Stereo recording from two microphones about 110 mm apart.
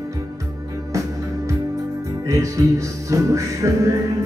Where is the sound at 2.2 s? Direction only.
30° right (ahead or behind).